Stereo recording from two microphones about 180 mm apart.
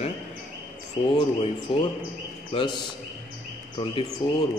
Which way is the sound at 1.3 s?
30° left (ahead or behind).